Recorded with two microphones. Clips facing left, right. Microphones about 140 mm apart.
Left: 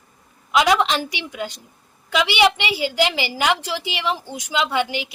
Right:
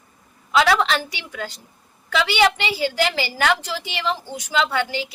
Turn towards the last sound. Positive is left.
turn(degrees=15)  # may be behind; listen again after turning